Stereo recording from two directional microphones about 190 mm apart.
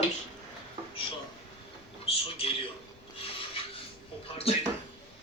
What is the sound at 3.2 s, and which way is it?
Filing, 30° left (ahead or behind).